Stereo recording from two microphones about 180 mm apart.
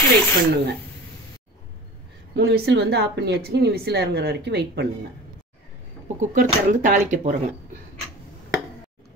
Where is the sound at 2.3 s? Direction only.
70° right (ahead or behind).